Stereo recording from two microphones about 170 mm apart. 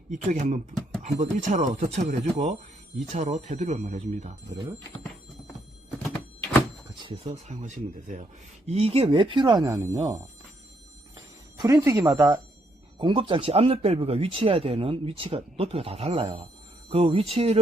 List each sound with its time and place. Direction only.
0.1 s speech: 45° right (ahead or behind)
7.4 s speech: 45° right (ahead or behind); by 10.2 s 25° right (ahead or behind)
11.5 s speech: 20° right (ahead or behind)